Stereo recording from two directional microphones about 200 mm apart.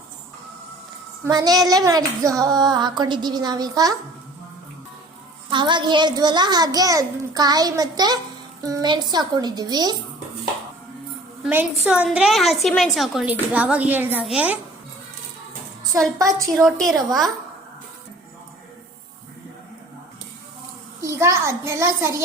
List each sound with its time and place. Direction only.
1.2 s a child's voice: 20° right (ahead or behind)
5.5 s a child's voice: 25° right (ahead or behind)
11.4 s a woman's voice: 5° right (ahead or behind)
16.6 s a woman's voice: centre (ahead or behind)
21.0 s a child's voice: 15° right (ahead or behind)